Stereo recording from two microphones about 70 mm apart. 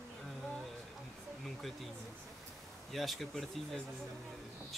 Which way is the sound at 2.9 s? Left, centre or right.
Centre.